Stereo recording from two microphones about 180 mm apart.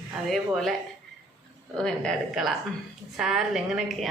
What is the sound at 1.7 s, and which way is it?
A woman's voice, 5° left (ahead or behind).